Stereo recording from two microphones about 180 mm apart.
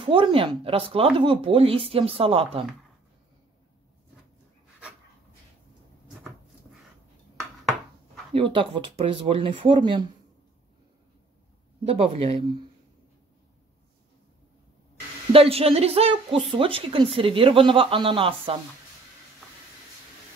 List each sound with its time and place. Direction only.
0.0 s speech: 30° right (ahead or behind)
8.3 s speech: 30° right (ahead or behind)
11.8 s speech: 35° right (ahead or behind)
15.3 s speech: 35° right (ahead or behind)